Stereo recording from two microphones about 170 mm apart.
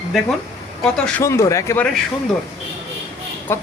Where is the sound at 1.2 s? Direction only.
15° left (ahead or behind).